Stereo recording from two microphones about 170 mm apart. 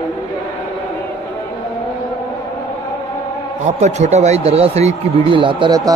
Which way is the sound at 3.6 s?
45° right (ahead or behind).